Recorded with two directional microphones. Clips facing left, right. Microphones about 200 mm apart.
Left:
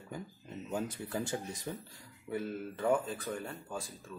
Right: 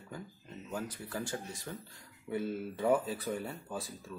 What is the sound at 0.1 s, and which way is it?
Speech, 20° left (ahead or behind).